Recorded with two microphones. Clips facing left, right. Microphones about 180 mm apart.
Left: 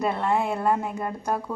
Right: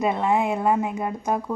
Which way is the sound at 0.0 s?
10° right (ahead or behind).